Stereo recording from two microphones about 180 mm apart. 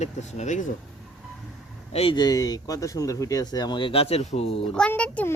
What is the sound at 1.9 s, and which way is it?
Speech, 30° left (ahead or behind).